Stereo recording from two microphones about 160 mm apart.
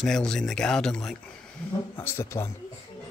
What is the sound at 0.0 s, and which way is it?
Speech, 5° left (ahead or behind).